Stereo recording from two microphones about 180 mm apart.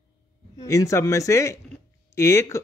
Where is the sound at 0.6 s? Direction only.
20° left (ahead or behind).